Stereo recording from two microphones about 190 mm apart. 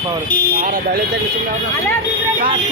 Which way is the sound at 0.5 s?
45° right (ahead or behind).